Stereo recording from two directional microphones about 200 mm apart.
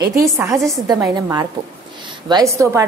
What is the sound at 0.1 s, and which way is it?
A woman's voice, 15° right (ahead or behind).